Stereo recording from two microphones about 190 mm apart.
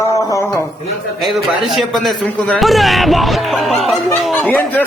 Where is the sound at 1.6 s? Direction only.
Centre (ahead or behind).